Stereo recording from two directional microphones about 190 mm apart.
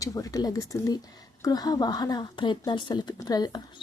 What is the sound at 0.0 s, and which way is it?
A woman's voice, 20° left (ahead or behind).